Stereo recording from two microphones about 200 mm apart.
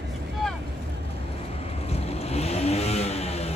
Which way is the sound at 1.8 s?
30° left (ahead or behind).